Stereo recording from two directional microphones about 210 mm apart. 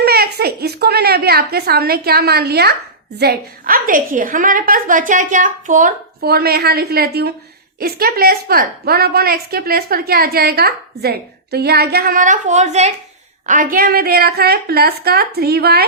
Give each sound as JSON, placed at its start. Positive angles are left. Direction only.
{"t": 0.0, "sound": "a woman's voice", "side_deg": -50}